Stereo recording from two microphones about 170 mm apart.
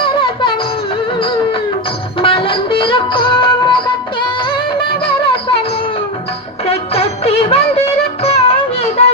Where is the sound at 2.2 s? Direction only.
30° left (ahead or behind).